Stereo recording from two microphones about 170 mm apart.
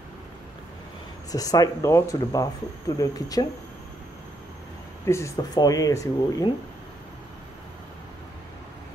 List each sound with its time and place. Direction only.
1.3 s speech: 20° left (ahead or behind)
5.0 s speech: 15° left (ahead or behind)